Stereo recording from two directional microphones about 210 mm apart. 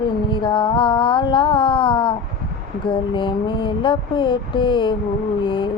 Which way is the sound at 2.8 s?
20° left (ahead or behind).